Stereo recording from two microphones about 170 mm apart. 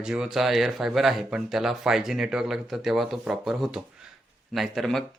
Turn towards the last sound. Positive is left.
turn(degrees=0)  # may be behind; listen again after turning